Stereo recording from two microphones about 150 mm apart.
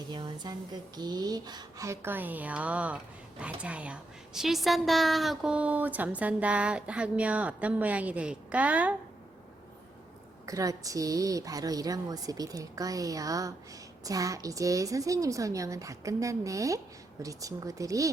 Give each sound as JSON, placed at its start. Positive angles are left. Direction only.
{"t": 0.1, "sound": "a woman's voice", "side_deg": -30}
{"t": 10.4, "sound": "a woman's voice", "side_deg": -20}